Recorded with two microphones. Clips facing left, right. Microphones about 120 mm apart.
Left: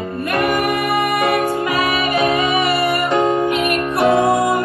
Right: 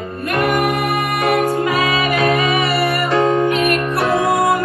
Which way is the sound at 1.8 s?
25° left (ahead or behind).